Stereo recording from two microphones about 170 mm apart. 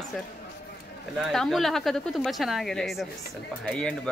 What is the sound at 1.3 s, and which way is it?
A woman's voice, centre (ahead or behind).